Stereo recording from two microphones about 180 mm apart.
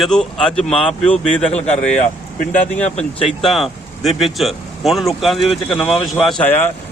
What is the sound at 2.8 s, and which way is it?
Speech, 35° left (ahead or behind).